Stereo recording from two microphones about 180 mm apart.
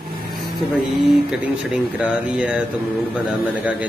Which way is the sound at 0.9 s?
5° right (ahead or behind).